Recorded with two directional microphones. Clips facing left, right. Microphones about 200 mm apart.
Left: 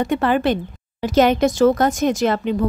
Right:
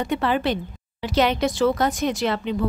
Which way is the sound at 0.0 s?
50° left (ahead or behind).